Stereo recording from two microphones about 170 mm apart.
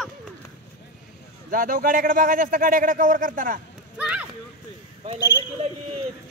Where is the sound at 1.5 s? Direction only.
55° right (ahead or behind).